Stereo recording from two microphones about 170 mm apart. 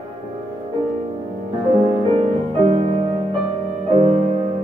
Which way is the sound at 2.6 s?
35° right (ahead or behind).